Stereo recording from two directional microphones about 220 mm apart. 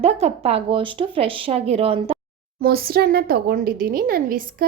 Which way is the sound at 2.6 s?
45° right (ahead or behind).